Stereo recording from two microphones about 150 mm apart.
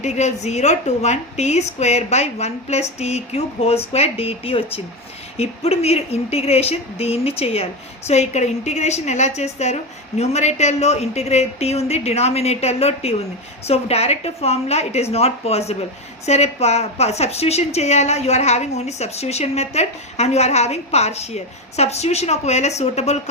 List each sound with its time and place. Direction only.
0.0 s a woman's voice: 50° left (ahead or behind)